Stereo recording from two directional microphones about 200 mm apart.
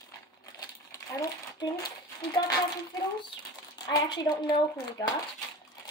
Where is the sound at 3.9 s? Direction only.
20° left (ahead or behind).